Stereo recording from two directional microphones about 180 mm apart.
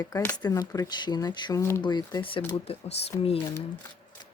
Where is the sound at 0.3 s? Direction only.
20° left (ahead or behind).